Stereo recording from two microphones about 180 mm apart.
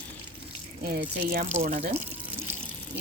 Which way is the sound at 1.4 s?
40° right (ahead or behind).